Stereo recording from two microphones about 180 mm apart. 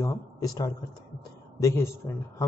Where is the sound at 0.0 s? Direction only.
20° left (ahead or behind).